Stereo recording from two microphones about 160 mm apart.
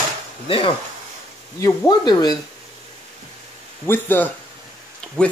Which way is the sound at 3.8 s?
15° left (ahead or behind).